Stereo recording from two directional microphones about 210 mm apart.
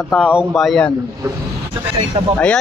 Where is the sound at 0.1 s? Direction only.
5° right (ahead or behind).